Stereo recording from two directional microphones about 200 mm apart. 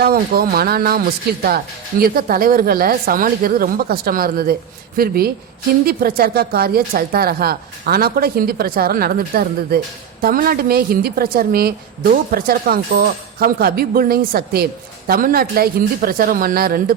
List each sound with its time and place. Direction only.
0.0 s speech: 50° right (ahead or behind)